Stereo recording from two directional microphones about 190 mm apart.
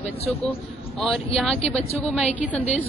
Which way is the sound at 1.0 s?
Centre (ahead or behind).